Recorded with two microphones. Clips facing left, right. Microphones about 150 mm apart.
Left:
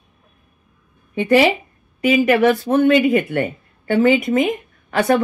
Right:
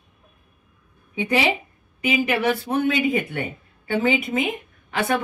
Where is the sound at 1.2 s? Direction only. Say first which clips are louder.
Left 8 dB; 60° left (ahead or behind).